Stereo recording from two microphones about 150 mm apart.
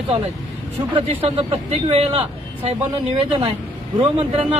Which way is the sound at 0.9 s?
40° right (ahead or behind).